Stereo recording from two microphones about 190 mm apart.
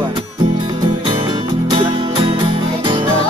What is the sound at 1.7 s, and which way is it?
Music, 25° right (ahead or behind).